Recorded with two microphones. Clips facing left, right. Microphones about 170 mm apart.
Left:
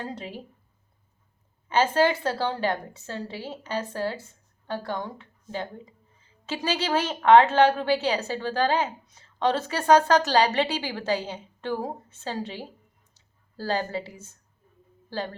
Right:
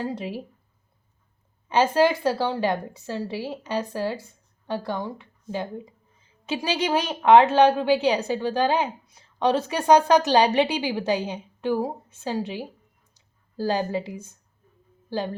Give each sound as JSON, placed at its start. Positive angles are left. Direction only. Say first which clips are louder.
{"t": 0.0, "sound": "a woman's voice", "louder": "right 6 dB", "side_deg": -10}
{"t": 1.6, "sound": "a woman's voice", "louder": "right 2 dB", "side_deg": -15}
{"t": 13.1, "sound": "a sound", "louder": "right 7 dB", "side_deg": -15}
{"t": 15.1, "sound": "a woman's voice", "louder": "right 4 dB", "side_deg": -15}